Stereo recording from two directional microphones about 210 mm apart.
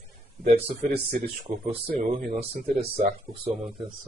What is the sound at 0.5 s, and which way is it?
Speech, 45° right (ahead or behind).